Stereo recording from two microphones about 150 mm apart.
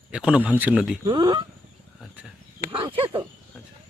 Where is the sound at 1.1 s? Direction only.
30° right (ahead or behind).